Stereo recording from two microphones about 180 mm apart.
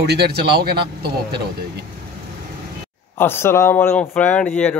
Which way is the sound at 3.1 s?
10° left (ahead or behind).